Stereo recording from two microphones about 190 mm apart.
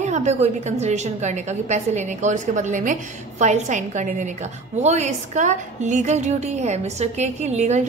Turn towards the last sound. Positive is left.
turn(degrees=-35)  # may be behind; listen again after turning